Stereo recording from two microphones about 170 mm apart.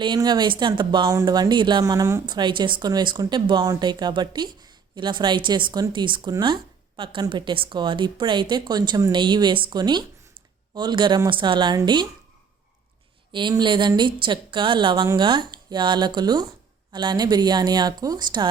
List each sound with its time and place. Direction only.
0.0 s speech: 25° right (ahead or behind)
13.3 s speech: 25° right (ahead or behind)